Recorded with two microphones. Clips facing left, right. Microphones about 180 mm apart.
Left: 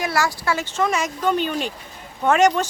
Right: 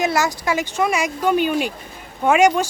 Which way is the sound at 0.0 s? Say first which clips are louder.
Right 3 dB; 20° right (ahead or behind).